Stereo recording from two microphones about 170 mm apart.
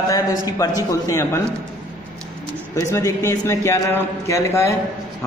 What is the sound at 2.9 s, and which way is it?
A man's voice, 15° left (ahead or behind).